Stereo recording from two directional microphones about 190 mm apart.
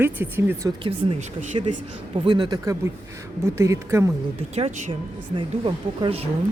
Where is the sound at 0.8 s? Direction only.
30° right (ahead or behind).